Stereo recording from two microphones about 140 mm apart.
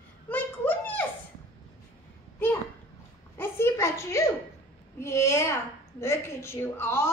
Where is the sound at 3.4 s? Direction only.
20° left (ahead or behind).